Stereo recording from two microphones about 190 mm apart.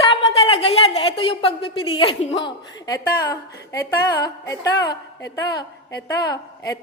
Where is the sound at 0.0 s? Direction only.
30° left (ahead or behind).